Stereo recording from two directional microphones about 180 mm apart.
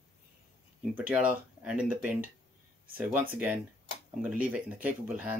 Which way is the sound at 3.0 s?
10° right (ahead or behind).